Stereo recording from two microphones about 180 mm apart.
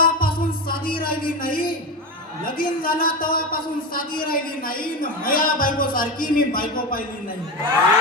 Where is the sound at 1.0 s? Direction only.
50° left (ahead or behind).